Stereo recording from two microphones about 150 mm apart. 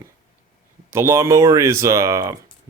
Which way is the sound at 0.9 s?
20° right (ahead or behind).